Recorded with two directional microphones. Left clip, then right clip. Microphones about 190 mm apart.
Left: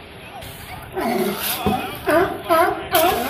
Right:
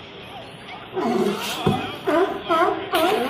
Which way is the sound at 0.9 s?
5° left (ahead or behind).